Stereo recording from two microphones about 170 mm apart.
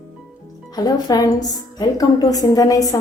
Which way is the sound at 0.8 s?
20° left (ahead or behind).